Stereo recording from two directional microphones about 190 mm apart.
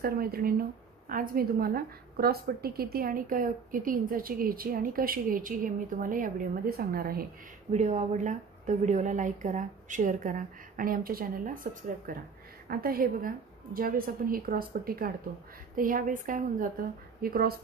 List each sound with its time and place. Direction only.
0.0 s speech: 50° right (ahead or behind)
7.7 s a woman's voice: 35° right (ahead or behind)